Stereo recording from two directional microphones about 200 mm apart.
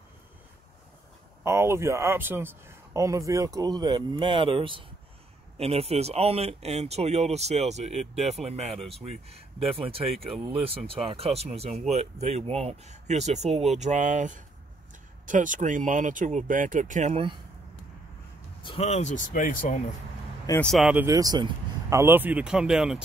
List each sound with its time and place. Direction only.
1.4 s a man's voice: 15° right (ahead or behind); by 13.5 s 35° right (ahead or behind)
13.5 s speech: centre (ahead or behind)
13.7 s speech: 35° right (ahead or behind)
18.6 s speech: 30° left (ahead or behind)
20.6 s a man's voice: centre (ahead or behind)